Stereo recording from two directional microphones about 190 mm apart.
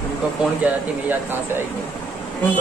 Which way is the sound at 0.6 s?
10° right (ahead or behind).